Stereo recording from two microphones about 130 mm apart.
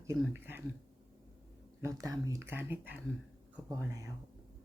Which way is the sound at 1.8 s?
25° right (ahead or behind).